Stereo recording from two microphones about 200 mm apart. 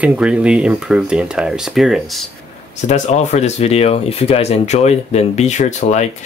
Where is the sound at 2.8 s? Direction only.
35° left (ahead or behind).